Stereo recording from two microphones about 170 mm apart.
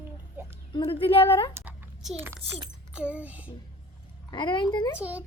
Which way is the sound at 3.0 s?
5° right (ahead or behind).